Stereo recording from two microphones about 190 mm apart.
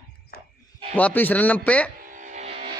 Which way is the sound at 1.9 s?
45° right (ahead or behind).